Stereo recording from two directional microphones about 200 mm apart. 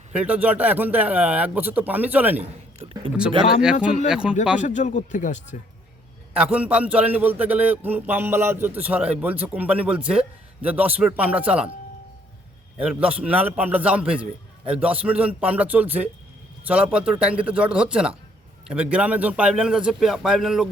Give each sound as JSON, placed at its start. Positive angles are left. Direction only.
{"t": 0.1, "sound": "a man's voice", "side_deg": -5}
{"t": 4.5, "sound": "speech", "side_deg": 40}
{"t": 6.3, "sound": "a man's voice", "side_deg": -5}
{"t": 12.8, "sound": "a man's voice", "side_deg": -5}